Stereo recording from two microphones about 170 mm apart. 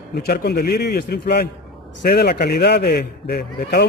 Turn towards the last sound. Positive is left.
turn(degrees=65)  # may be behind; listen again after turning